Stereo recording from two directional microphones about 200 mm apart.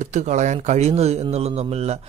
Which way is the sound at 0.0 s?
35° right (ahead or behind).